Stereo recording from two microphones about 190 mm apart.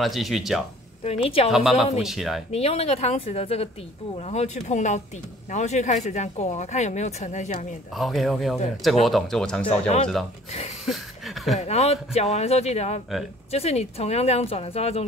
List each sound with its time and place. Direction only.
0.0 s speech: centre (ahead or behind)
1.0 s speech: 30° left (ahead or behind)
1.5 s speech: 5° right (ahead or behind)
2.5 s speech: 30° left (ahead or behind)
7.9 s speech: centre (ahead or behind)
9.7 s speech: 35° left (ahead or behind)
10.9 s speech: centre (ahead or behind)
11.6 s speech: 35° left (ahead or behind)